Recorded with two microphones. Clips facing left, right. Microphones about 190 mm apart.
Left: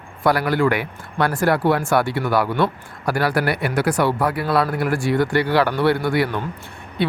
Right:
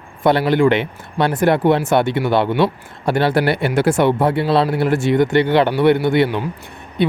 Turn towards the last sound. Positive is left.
turn(degrees=-20)  # may be behind; listen again after turning